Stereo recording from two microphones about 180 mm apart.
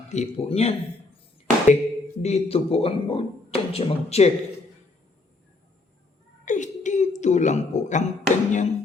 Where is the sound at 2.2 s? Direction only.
35° left (ahead or behind).